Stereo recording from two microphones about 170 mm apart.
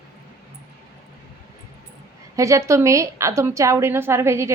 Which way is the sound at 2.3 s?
20° right (ahead or behind).